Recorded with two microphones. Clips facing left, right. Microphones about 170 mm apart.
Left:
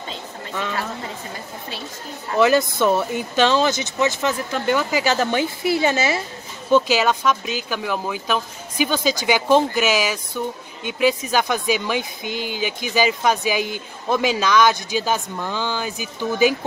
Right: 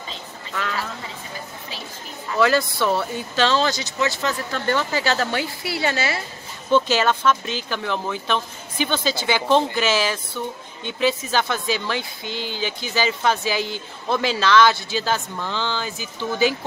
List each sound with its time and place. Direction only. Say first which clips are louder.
2.3 s speech: left 3 dB; 20° left (ahead or behind)